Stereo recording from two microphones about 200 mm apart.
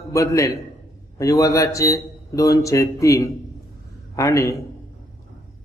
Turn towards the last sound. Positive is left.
turn(degrees=15)  # may be behind; listen again after turning